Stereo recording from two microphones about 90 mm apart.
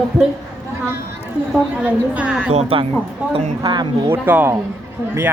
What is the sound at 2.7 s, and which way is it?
Speech, 90° right.